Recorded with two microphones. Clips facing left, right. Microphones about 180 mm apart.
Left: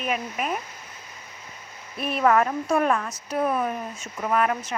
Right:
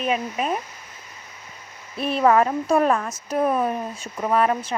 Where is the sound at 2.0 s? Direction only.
30° right (ahead or behind).